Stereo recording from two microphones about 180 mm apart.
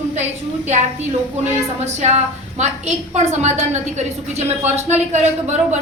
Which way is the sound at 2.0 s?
40° right (ahead or behind).